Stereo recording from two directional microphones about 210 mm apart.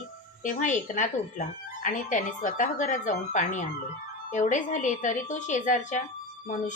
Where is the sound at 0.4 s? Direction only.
35° left (ahead or behind).